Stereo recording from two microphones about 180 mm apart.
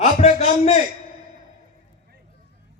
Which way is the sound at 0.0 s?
35° left (ahead or behind).